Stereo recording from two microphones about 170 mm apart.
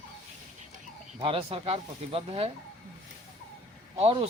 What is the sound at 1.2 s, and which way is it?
Speech, 35° right (ahead or behind).